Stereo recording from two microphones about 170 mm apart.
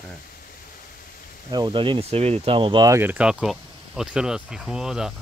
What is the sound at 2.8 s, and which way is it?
Speech, 15° right (ahead or behind).